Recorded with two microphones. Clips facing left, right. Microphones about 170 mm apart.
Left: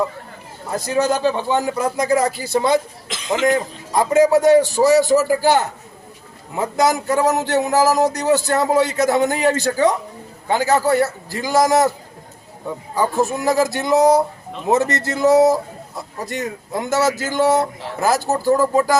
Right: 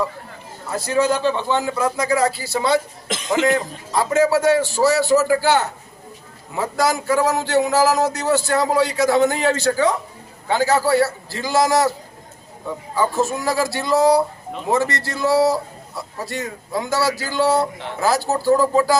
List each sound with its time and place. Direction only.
1.5 s a man's voice: 15° left (ahead or behind)
13.0 s a man's voice: 15° left (ahead or behind)